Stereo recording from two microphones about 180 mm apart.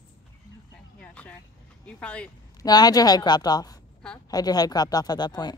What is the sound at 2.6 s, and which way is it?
Speech, 20° left (ahead or behind).